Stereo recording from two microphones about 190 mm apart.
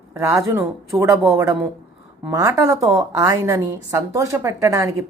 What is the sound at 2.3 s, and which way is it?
A woman's voice, 20° right (ahead or behind).